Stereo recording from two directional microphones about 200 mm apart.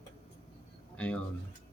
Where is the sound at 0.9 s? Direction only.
5° left (ahead or behind).